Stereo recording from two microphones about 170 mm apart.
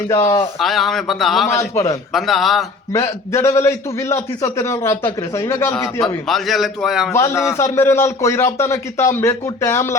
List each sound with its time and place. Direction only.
0.1 s a man's voice: 15° left (ahead or behind)
0.6 s a man's voice: centre (ahead or behind)
1.5 s a man's voice: 20° left (ahead or behind)
2.1 s a man's voice: centre (ahead or behind)
2.9 s a man's voice: 15° left (ahead or behind)
6.2 s a man's voice: centre (ahead or behind)
7.1 s a man's voice: 15° left (ahead or behind)